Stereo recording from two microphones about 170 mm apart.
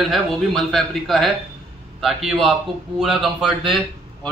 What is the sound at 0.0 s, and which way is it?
A man's voice, centre (ahead or behind).